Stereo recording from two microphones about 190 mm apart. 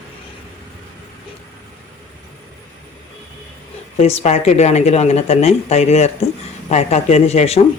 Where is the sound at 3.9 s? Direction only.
35° left (ahead or behind).